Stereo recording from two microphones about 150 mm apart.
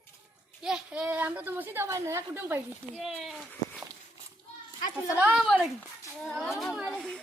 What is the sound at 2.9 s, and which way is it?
Speech, centre (ahead or behind).